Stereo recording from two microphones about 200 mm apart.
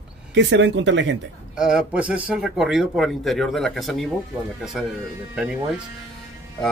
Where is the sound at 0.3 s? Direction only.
65° right (ahead or behind).